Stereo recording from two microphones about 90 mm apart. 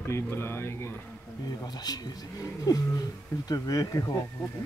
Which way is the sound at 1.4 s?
50° left (ahead or behind).